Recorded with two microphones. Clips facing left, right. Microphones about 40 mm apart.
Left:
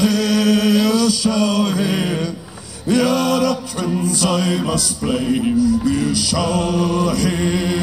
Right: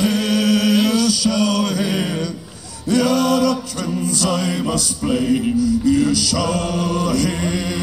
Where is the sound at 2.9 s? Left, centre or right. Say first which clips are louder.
Even; left.